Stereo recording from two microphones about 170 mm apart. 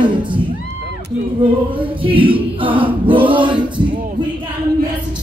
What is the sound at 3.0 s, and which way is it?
Male singing, 30° right (ahead or behind).